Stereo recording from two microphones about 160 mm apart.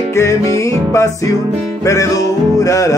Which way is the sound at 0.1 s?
20° left (ahead or behind).